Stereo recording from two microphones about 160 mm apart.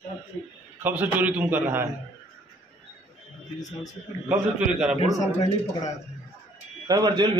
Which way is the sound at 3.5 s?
25° left (ahead or behind).